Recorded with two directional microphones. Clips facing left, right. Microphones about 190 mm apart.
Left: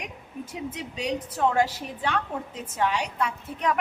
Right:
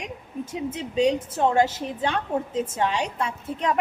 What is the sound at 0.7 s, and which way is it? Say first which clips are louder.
A woman's voice: right 10 dB; 30° right (ahead or behind).